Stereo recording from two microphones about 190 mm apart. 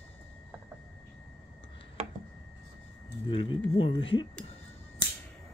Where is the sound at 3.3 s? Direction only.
25° left (ahead or behind).